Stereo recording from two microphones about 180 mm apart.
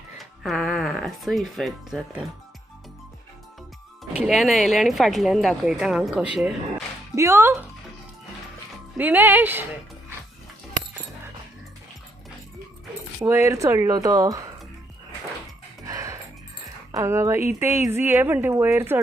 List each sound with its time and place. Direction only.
0.2 s speech: centre (ahead or behind)
4.3 s speech: centre (ahead or behind)
7.2 s speech: 15° right (ahead or behind)
9.0 s speech: 10° right (ahead or behind)
13.1 s speech: 15° right (ahead or behind)
15.9 s music: 20° right (ahead or behind)
16.9 s speech: 15° right (ahead or behind)